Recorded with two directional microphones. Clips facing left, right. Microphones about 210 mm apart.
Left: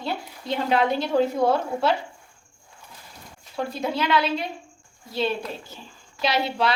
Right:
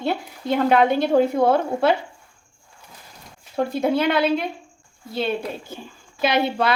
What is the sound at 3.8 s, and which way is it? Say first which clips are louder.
Speech: right 4 dB; 55° right (ahead or behind).